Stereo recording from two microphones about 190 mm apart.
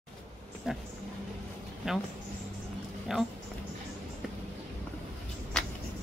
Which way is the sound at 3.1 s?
Centre (ahead or behind).